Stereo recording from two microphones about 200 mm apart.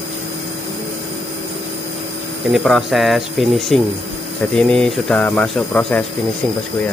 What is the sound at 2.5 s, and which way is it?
Speech, centre (ahead or behind).